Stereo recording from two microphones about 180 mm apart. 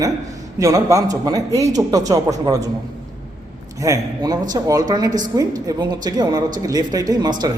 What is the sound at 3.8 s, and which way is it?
Speech, 20° right (ahead or behind).